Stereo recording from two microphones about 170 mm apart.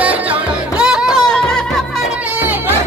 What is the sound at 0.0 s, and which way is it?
Music, 5° right (ahead or behind).